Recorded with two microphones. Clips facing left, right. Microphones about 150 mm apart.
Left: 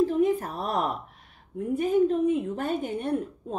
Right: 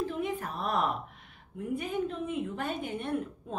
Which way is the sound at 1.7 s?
40° left (ahead or behind).